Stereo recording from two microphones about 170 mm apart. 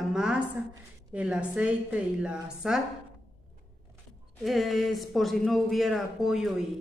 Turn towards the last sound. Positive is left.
turn(degrees=0)  # may be behind; listen again after turning